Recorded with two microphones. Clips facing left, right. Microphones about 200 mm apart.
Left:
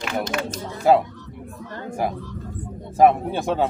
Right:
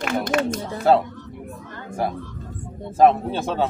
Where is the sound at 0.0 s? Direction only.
55° right (ahead or behind).